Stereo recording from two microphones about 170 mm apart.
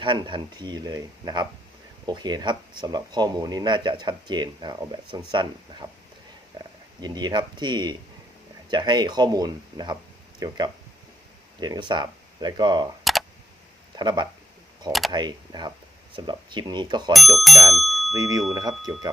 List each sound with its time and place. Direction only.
0.0 s speech: 30° right (ahead or behind)
7.0 s speech: 25° right (ahead or behind)
11.6 s speech: 25° right (ahead or behind)
13.9 s speech: 25° right (ahead or behind)
17.1 s speech: centre (ahead or behind)
18.1 s speech: 20° right (ahead or behind)